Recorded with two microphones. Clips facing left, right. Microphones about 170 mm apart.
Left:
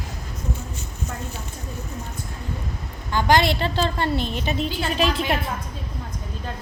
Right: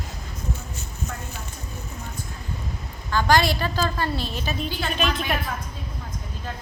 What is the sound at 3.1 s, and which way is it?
A woman's voice, 20° left (ahead or behind).